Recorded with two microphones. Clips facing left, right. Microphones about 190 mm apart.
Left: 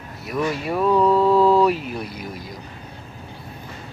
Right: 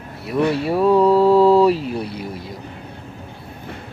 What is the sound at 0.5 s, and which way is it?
Speech, 30° right (ahead or behind).